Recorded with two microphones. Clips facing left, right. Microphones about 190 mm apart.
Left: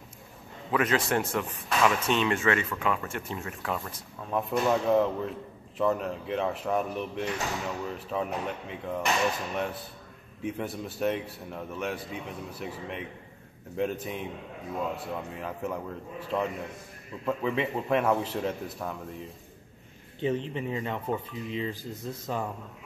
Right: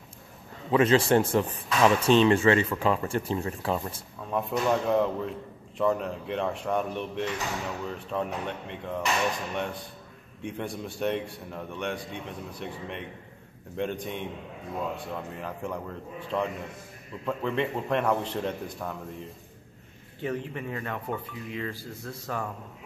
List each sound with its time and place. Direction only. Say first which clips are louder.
0.7 s a man's voice: right 5 dB; 30° right (ahead or behind)
4.2 s speech: even; centre (ahead or behind)
20.2 s speech: left 3 dB; 20° left (ahead or behind)